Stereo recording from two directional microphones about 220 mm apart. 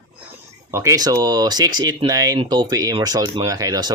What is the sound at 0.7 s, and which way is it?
Speech, 15° right (ahead or behind).